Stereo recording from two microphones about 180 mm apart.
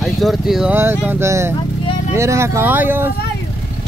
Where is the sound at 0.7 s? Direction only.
15° right (ahead or behind).